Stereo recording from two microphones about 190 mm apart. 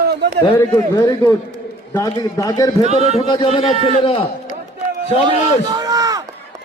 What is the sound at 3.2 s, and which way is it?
A man's voice, 30° left (ahead or behind).